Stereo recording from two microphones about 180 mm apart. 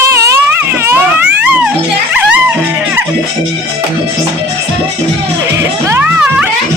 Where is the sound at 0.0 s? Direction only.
15° right (ahead or behind).